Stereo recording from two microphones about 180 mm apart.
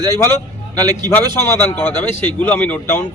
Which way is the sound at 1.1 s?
10° left (ahead or behind).